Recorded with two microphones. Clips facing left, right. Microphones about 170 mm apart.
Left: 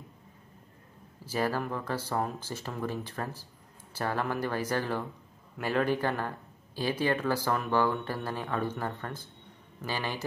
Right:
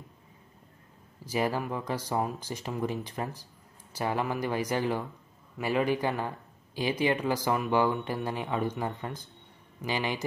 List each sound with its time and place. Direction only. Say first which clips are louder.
1.2 s speech: right 1 dB; 15° right (ahead or behind)